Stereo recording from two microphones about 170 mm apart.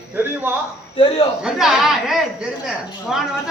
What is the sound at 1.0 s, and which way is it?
Speech, 35° left (ahead or behind).